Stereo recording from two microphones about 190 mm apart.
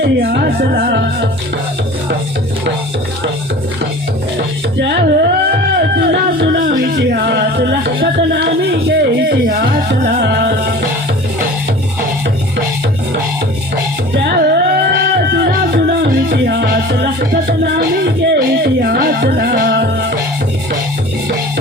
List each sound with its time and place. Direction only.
0.0 s music: 55° right (ahead or behind)
4.4 s music: 60° right (ahead or behind)
14.1 s music: 55° right (ahead or behind)